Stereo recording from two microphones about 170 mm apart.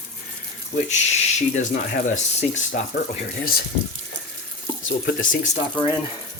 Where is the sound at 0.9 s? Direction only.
45° left (ahead or behind).